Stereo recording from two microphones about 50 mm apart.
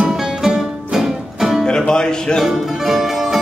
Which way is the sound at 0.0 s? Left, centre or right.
Centre.